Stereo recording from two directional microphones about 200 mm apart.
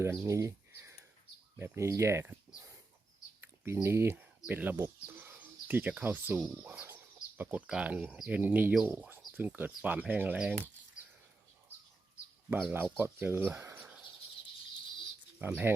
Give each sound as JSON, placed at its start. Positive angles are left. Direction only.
{"t": 0.0, "sound": "speech", "side_deg": -15}
{"t": 3.6, "sound": "speech", "side_deg": -10}
{"t": 12.5, "sound": "speech", "side_deg": 0}
{"t": 15.4, "sound": "speech", "side_deg": -10}